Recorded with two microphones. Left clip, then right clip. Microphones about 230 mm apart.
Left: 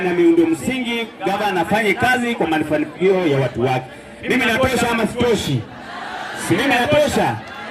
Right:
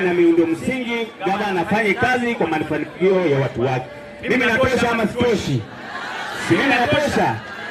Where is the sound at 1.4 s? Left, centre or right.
Left.